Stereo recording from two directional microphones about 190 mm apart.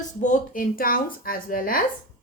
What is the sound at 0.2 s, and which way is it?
A woman's voice, 40° left (ahead or behind).